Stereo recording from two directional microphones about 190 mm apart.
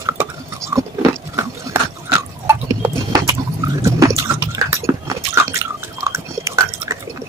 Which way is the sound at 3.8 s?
15° right (ahead or behind).